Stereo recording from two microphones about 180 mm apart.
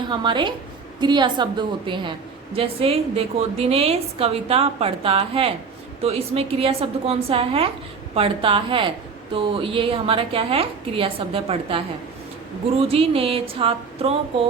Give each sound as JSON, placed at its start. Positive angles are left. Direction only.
{"t": 0.1, "sound": "a woman's voice", "side_deg": -25}
{"t": 12.9, "sound": "a woman's voice", "side_deg": -30}